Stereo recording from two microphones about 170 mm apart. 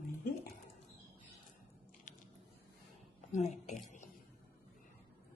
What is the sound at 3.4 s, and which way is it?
Speech, 40° left (ahead or behind).